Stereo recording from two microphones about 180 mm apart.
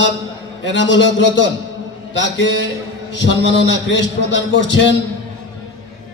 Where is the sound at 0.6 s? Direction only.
90° left.